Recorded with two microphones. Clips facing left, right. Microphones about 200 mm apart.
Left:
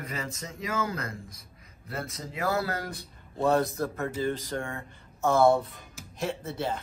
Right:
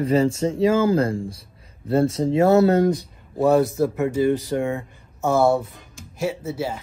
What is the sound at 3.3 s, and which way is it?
Speech, 5° right (ahead or behind).